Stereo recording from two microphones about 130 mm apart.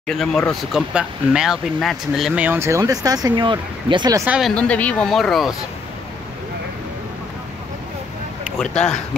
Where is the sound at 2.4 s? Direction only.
15° right (ahead or behind); by 4.1 s 35° right (ahead or behind).